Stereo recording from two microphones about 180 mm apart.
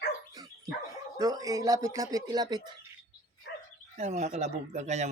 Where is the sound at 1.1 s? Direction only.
20° right (ahead or behind).